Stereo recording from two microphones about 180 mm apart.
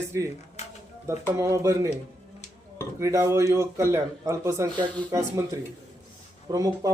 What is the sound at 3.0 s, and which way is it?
Speech, 15° right (ahead or behind).